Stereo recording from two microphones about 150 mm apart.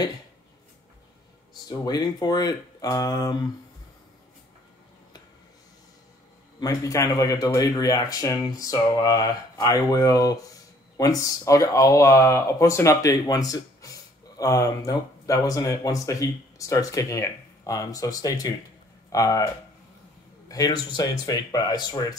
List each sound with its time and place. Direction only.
1.7 s speech: 25° left (ahead or behind)
6.6 s speech: 20° left (ahead or behind)